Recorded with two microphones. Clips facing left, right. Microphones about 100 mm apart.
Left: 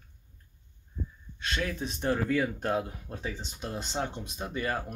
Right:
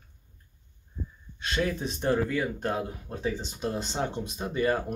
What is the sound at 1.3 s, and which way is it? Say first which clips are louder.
Speech: right 4 dB; 10° right (ahead or behind).